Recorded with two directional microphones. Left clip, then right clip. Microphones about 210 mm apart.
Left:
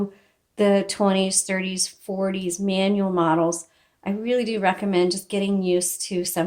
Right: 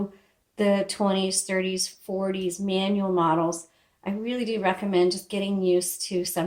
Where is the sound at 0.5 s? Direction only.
45° left (ahead or behind).